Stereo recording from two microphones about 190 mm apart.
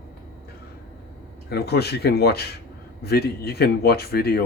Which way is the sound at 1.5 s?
55° left (ahead or behind).